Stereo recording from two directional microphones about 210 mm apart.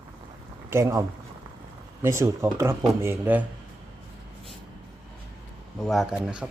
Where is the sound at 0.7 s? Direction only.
15° right (ahead or behind).